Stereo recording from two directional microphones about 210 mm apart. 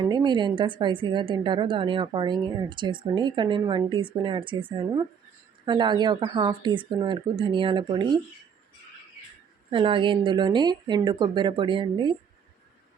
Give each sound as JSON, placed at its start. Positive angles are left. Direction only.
{"t": 0.0, "sound": "a woman's voice", "side_deg": -20}
{"t": 9.6, "sound": "a woman's voice", "side_deg": -25}